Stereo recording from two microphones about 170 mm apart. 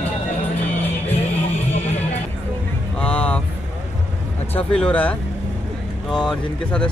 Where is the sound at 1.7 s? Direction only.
40° left (ahead or behind).